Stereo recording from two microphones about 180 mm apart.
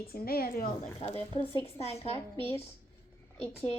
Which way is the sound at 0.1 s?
55° left (ahead or behind).